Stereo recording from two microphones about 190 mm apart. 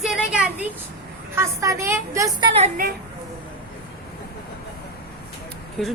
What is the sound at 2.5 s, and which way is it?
Speech, 45° right (ahead or behind).